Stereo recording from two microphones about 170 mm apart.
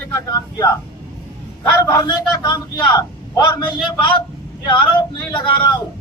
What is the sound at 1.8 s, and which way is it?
Speech, 20° left (ahead or behind).